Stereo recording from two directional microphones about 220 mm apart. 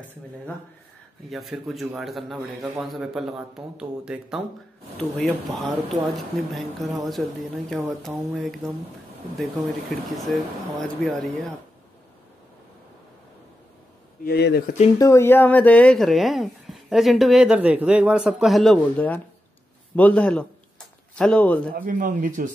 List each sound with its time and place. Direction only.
1.3 s speech: centre (ahead or behind)
14.2 s speech: 45° left (ahead or behind)
15.0 s speech: 15° left (ahead or behind)
21.7 s speech: 35° right (ahead or behind)